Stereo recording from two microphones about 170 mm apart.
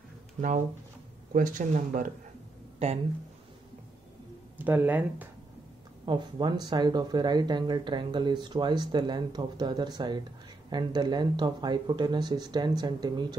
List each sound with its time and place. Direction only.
1.3 s speech: 50° right (ahead or behind)
4.6 s speech: 10° right (ahead or behind)
6.0 s speech: 25° right (ahead or behind)